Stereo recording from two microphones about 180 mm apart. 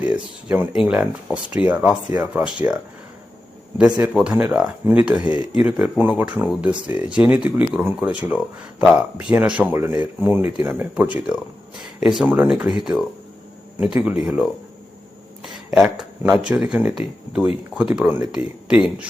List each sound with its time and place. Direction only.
0.0 s speech: 10° right (ahead or behind)
4.0 s speech: 5° right (ahead or behind)
5.3 s speech: 30° left (ahead or behind)
5.5 s speech: 5° right (ahead or behind)